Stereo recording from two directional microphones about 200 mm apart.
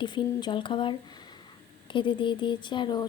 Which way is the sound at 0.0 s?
25° left (ahead or behind).